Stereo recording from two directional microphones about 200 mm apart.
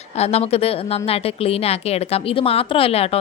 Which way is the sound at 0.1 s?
30° left (ahead or behind).